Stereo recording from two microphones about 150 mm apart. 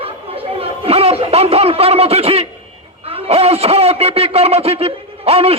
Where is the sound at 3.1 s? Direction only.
40° right (ahead or behind).